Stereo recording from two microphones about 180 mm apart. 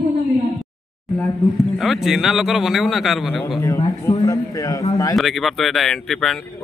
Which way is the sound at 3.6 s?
15° left (ahead or behind).